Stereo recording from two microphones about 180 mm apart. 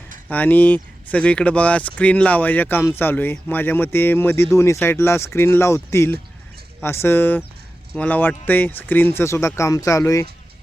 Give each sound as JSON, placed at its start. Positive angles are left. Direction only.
{"t": 0.3, "sound": "speech", "side_deg": 10}